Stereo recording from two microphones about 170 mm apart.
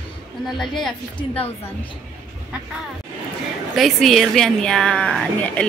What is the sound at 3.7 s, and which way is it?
A woman's voice, centre (ahead or behind).